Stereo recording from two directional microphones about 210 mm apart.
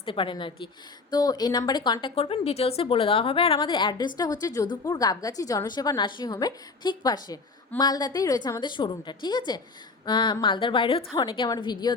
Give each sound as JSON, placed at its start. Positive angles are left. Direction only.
{"t": 0.0, "sound": "a woman's voice", "side_deg": 25}